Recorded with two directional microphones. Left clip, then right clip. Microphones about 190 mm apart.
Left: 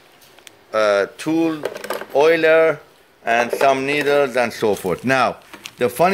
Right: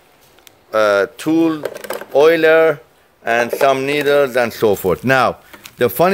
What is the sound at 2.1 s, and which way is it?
Speech, 55° right (ahead or behind).